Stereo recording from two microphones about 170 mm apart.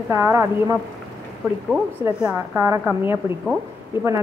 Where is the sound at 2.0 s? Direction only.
15° right (ahead or behind).